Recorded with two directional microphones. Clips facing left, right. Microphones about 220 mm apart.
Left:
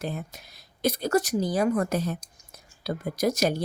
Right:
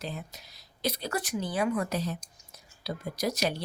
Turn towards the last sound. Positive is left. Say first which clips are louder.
# left 5 dB
turn(degrees=45)  # may be behind; listen again after turning